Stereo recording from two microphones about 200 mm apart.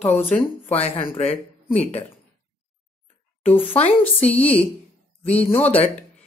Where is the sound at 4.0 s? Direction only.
10° left (ahead or behind).